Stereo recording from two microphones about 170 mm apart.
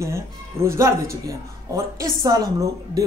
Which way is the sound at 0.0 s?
15° right (ahead or behind).